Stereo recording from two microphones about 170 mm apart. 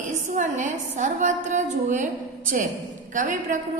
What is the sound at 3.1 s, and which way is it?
Speech, 50° right (ahead or behind).